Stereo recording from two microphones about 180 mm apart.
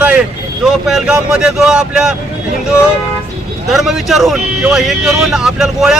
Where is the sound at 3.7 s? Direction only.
Centre (ahead or behind).